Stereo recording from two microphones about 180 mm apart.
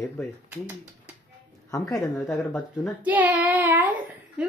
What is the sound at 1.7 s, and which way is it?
Speech, 15° left (ahead or behind).